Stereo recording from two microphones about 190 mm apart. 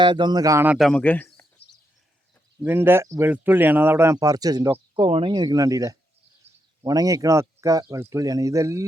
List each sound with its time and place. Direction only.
0.0 s speech: 25° right (ahead or behind); by 1.6 s 10° left (ahead or behind)
2.6 s speech: 10° right (ahead or behind)